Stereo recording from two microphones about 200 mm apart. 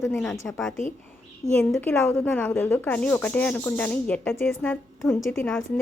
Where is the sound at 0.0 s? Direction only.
5° left (ahead or behind).